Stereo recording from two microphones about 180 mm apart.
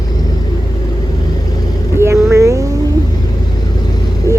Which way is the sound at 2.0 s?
15° right (ahead or behind).